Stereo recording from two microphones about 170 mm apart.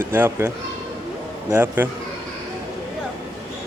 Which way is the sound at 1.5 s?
10° right (ahead or behind).